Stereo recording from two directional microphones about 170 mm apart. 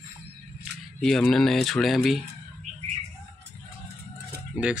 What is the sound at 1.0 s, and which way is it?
Speech, centre (ahead or behind).